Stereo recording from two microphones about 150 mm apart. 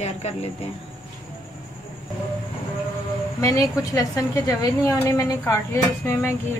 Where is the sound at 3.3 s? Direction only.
20° left (ahead or behind).